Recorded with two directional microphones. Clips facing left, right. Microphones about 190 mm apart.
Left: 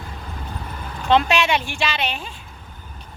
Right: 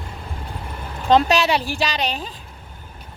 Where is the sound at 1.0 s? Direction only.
40° right (ahead or behind).